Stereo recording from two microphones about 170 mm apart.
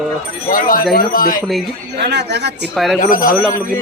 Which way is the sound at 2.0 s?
85° right.